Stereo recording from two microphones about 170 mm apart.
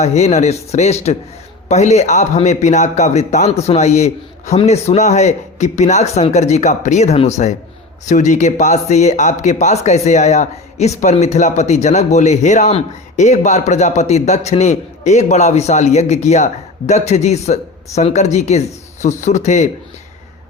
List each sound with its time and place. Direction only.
0.0 s a man's voice: 40° left (ahead or behind)